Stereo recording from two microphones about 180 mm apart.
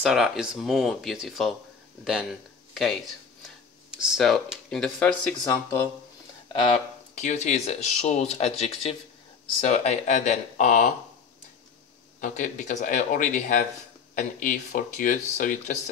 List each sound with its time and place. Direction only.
0.0 s speech: centre (ahead or behind)
2.7 s speech: centre (ahead or behind)
7.2 s speech: 40° left (ahead or behind)
12.2 s speech: 45° left (ahead or behind)